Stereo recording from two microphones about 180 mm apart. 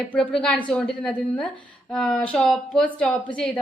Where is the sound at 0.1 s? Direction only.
5° left (ahead or behind).